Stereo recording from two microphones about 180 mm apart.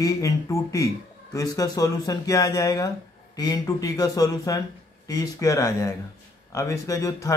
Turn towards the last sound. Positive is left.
turn(degrees=15)  # may be behind; listen again after turning